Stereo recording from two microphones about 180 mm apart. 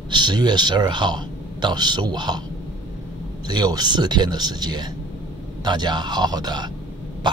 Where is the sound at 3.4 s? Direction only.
20° right (ahead or behind).